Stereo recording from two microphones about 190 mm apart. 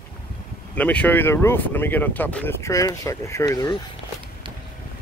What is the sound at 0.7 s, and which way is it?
Speech, 5° left (ahead or behind).